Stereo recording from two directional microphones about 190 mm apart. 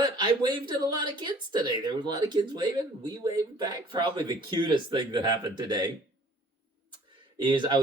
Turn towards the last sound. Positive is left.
turn(degrees=-25)  # may be behind; listen again after turning